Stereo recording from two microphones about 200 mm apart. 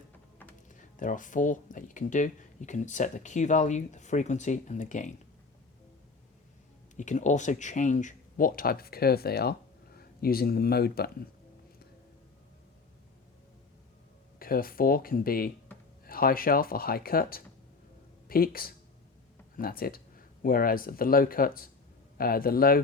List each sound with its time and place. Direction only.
0.7 s speech: 40° left (ahead or behind)
6.9 s speech: 40° left (ahead or behind)
14.3 s speech: 45° left (ahead or behind)